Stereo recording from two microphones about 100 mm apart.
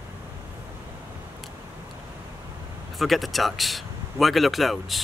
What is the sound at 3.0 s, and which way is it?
Speech, centre (ahead or behind).